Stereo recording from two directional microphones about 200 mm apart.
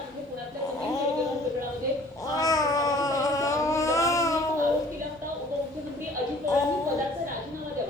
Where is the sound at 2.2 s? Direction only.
20° left (ahead or behind).